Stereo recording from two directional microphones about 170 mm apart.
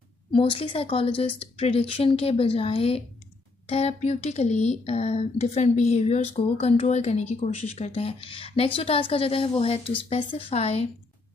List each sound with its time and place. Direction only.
0.3 s speech: 30° left (ahead or behind)